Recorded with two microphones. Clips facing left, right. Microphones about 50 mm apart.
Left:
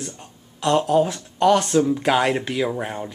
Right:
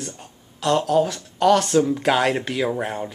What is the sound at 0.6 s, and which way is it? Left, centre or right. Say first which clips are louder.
Speech: left 1 dB; centre.